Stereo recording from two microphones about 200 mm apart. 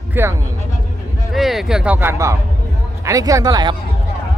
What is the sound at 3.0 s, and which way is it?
Speech, 15° right (ahead or behind).